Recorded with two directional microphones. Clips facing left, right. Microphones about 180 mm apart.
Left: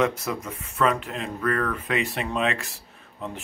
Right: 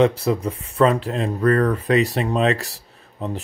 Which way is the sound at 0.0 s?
30° right (ahead or behind).